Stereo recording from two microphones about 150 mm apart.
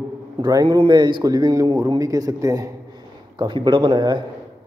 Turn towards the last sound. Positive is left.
turn(degrees=-30)  # may be behind; listen again after turning